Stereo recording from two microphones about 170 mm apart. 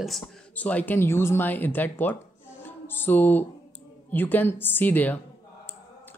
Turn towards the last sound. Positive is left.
turn(degrees=10)  # may be behind; listen again after turning